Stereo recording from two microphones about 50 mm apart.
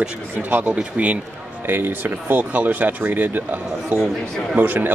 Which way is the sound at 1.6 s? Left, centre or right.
Right.